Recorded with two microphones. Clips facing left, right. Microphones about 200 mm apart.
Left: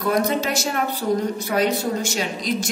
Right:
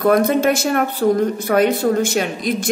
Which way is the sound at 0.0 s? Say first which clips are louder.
Right 7 dB; 55° right (ahead or behind).